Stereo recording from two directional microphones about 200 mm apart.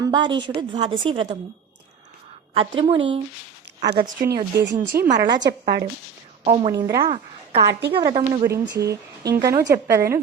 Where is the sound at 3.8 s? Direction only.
55° right (ahead or behind).